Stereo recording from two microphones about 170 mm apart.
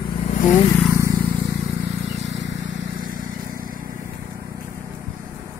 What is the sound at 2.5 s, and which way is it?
Vehicle, 90° left.